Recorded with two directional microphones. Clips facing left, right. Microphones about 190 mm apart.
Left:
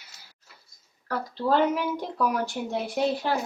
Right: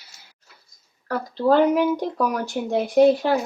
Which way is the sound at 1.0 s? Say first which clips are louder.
Right 7 dB; 45° right (ahead or behind).